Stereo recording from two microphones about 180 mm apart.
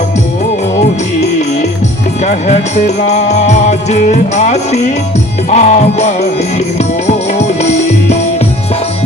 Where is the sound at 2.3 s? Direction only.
40° left (ahead or behind).